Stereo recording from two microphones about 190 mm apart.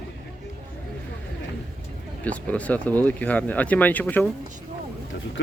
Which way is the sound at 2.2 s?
5° left (ahead or behind).